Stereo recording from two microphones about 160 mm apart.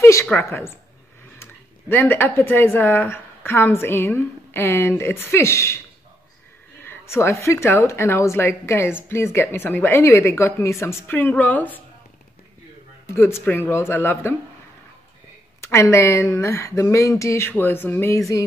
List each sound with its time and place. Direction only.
0.0 s a woman's voice: 15° left (ahead or behind)
6.8 s a woman's voice: 15° left (ahead or behind)
13.0 s a woman's voice: 15° left (ahead or behind)
15.6 s a woman's voice: 20° left (ahead or behind)